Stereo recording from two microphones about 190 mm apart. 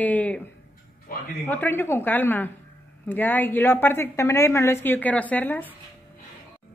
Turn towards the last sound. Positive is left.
turn(degrees=10)  # may be behind; listen again after turning